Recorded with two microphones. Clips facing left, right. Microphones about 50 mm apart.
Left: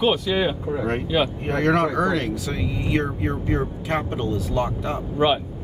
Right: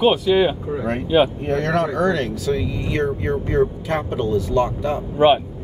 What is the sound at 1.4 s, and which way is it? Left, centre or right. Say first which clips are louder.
Speech: even; left.